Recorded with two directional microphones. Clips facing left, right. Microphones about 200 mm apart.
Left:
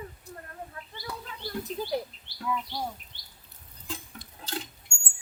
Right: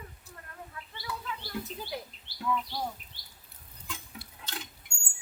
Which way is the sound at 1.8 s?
40° left (ahead or behind).